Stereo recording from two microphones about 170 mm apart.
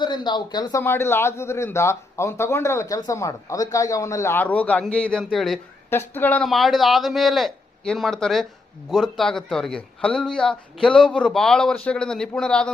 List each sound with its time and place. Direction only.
0.0 s speech: 25° left (ahead or behind)
0.8 s speech: 15° left (ahead or behind)
5.9 s speech: 10° left (ahead or behind)